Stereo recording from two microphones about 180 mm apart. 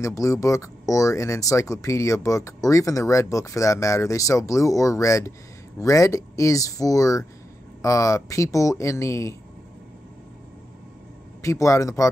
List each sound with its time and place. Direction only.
0.0 s speech: 15° left (ahead or behind)
11.4 s speech: 15° left (ahead or behind)